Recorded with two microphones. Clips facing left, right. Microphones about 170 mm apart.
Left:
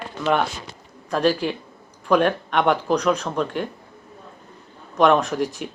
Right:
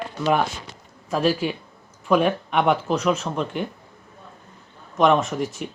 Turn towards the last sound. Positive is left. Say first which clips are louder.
# left 2 dB
turn(degrees=0)  # may be behind; listen again after turning